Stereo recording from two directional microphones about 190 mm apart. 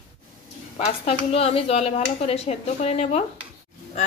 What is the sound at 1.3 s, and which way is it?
Speech, 30° left (ahead or behind).